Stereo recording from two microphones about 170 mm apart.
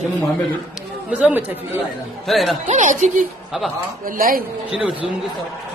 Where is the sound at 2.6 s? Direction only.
45° right (ahead or behind).